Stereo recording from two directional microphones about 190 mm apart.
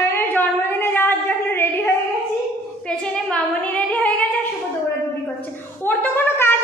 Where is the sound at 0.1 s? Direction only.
10° left (ahead or behind).